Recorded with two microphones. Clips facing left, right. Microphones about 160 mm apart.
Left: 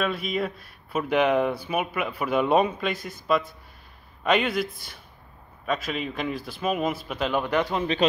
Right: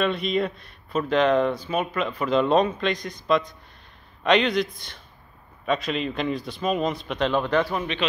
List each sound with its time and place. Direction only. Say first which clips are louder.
0.0 s speech: right 3 dB; 5° left (ahead or behind)